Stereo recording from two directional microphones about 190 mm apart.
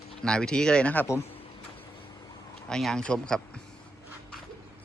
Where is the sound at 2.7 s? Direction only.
5° left (ahead or behind).